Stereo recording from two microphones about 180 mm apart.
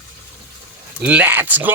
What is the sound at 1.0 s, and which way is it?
Speech, 10° right (ahead or behind).